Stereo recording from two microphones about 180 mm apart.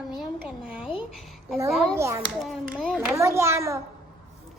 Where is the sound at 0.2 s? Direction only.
5° right (ahead or behind).